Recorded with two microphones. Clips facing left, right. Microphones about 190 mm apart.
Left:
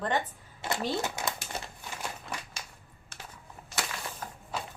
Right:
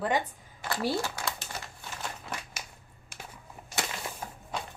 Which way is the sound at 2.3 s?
Centre (ahead or behind).